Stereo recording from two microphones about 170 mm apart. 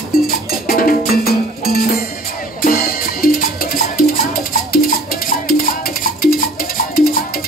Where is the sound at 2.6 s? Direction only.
60° left (ahead or behind).